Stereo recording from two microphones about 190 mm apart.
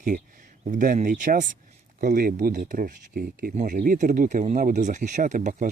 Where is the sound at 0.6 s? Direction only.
45° right (ahead or behind).